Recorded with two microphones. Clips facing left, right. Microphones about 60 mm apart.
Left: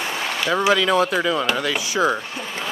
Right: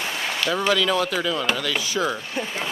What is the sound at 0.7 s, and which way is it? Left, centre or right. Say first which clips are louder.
Speech: left 4 dB; left.